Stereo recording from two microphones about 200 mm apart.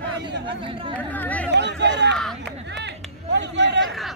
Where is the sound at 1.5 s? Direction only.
60° right (ahead or behind).